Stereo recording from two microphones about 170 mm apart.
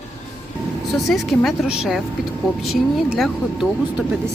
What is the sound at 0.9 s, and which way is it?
Speech, centre (ahead or behind).